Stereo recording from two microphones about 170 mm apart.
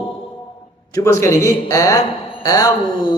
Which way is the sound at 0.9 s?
15° left (ahead or behind).